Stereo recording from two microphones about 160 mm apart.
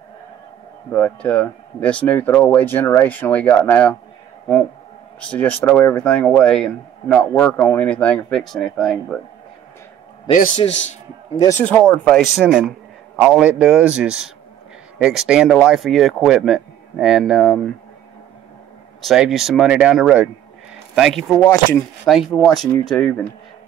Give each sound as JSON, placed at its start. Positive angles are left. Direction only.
{"t": 0.9, "sound": "speech", "side_deg": 10}
{"t": 5.2, "sound": "speech", "side_deg": 10}
{"t": 10.6, "sound": "a man's voice", "side_deg": 45}
{"t": 11.3, "sound": "speech", "side_deg": 20}
{"t": 12.0, "sound": "speech", "side_deg": 5}
{"t": 18.9, "sound": "speech", "side_deg": 0}